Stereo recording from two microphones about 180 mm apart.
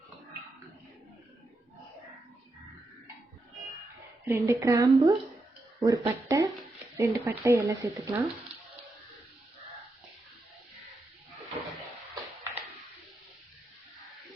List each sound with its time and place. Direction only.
4.3 s speech: 15° right (ahead or behind)